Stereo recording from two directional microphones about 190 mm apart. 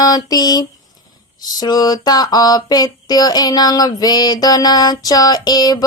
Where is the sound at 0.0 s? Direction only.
20° left (ahead or behind).